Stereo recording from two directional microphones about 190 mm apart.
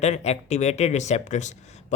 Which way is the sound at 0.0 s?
35° left (ahead or behind).